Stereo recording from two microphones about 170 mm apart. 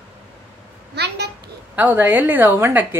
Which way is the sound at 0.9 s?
75° right (ahead or behind).